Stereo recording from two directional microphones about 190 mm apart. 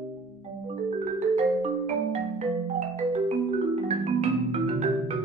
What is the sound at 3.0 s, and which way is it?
Music, 35° right (ahead or behind).